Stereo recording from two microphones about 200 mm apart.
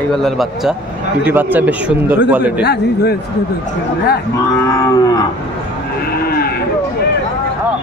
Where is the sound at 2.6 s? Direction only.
55° left (ahead or behind).